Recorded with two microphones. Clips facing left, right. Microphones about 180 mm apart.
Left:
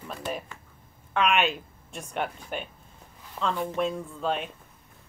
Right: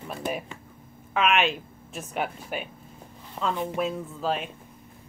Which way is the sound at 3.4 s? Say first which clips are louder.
Right 1 dB; 20° right (ahead or behind).